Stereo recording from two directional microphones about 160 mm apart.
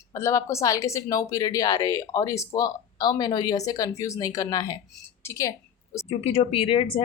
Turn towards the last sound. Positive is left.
turn(degrees=35)  # may be behind; listen again after turning